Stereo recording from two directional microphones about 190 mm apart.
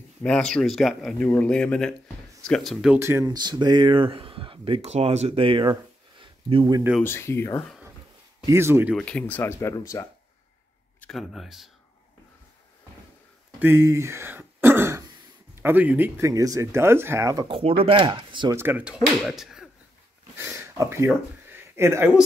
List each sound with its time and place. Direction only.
0.2 s speech: 5° left (ahead or behind)
3.0 s speech: 15° right (ahead or behind)
7.0 s speech: 10° left (ahead or behind)
8.5 s speech: 15° right (ahead or behind)
8.9 s speech: 5° left (ahead or behind)
11.0 s speech: centre (ahead or behind)
13.6 s throat clearing: 10° right (ahead or behind)
15.5 s speech: 10° right (ahead or behind)
18.6 s speech: 10° right (ahead or behind)
20.3 s speech: 15° right (ahead or behind)